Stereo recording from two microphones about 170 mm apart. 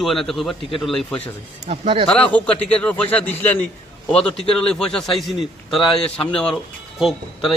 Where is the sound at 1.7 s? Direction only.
35° right (ahead or behind).